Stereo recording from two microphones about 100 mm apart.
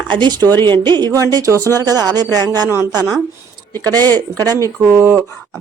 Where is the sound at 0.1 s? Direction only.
50° right (ahead or behind).